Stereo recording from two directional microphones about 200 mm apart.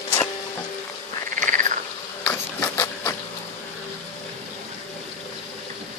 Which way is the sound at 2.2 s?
10° left (ahead or behind).